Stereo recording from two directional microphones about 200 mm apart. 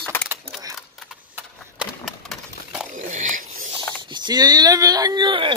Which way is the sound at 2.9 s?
40° right (ahead or behind).